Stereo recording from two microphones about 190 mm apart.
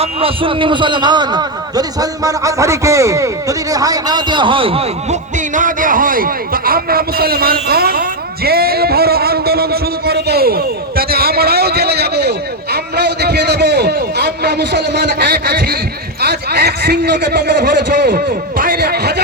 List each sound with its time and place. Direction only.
0.0 s a man's voice: 30° right (ahead or behind)
5.5 s a man's voice: 45° right (ahead or behind)
8.4 s a sound: 55° right (ahead or behind)
16.2 s a man's voice: 55° right (ahead or behind)